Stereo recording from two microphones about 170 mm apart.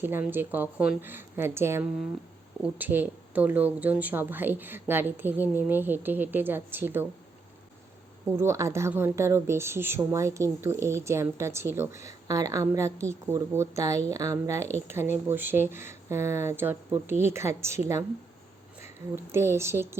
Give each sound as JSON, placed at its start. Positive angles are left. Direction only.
{"t": 0.0, "sound": "speech", "side_deg": -10}
{"t": 8.4, "sound": "speech", "side_deg": -15}
{"t": 19.1, "sound": "speech", "side_deg": -15}